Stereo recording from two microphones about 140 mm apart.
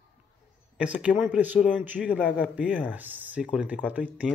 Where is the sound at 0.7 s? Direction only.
10° right (ahead or behind).